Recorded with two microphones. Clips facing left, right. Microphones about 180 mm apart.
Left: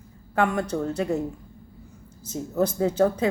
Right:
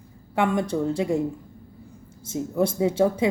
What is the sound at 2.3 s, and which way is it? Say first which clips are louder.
Speech: right 1 dB; 15° right (ahead or behind).